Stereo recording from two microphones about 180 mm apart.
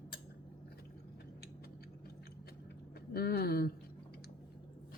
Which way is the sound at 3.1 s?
60° left (ahead or behind).